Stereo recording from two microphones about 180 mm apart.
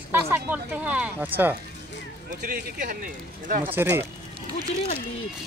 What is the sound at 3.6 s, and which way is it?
Speech, 10° right (ahead or behind).